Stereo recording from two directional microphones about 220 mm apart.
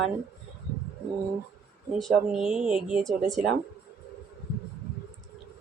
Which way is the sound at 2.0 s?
Centre (ahead or behind).